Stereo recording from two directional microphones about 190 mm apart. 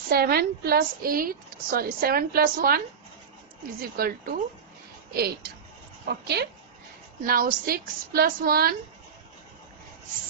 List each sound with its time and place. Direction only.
0.1 s a woman's voice: 55° right (ahead or behind)
3.8 s a woman's voice: 55° right (ahead or behind)